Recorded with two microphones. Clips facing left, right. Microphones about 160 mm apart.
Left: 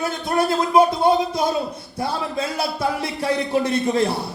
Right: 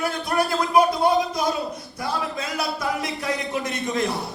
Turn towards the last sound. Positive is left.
turn(degrees=30)  # may be behind; listen again after turning